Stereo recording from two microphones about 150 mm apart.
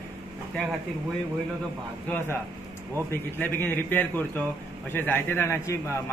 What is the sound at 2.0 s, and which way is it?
A man's voice, 15° left (ahead or behind).